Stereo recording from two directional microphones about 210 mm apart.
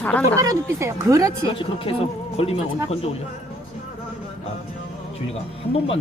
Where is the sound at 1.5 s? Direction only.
25° left (ahead or behind).